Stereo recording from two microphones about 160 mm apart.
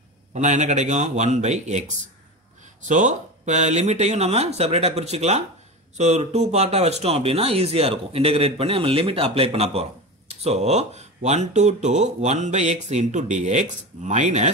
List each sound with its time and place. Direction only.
0.3 s speech: 45° right (ahead or behind)